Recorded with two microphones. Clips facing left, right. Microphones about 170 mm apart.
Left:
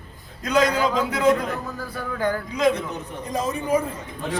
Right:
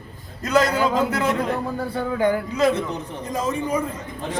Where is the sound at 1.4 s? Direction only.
30° right (ahead or behind).